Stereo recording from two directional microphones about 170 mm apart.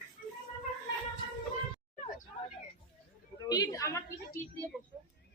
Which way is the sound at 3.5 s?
20° left (ahead or behind).